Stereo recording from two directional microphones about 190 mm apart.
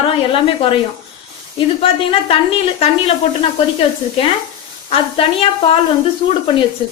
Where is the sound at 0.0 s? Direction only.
30° left (ahead or behind).